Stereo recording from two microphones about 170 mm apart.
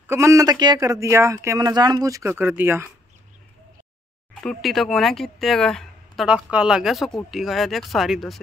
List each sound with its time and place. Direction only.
0.0 s speech: 15° right (ahead or behind)
4.4 s speech: centre (ahead or behind)